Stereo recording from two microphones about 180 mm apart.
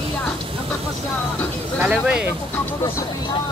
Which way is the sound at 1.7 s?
5° right (ahead or behind).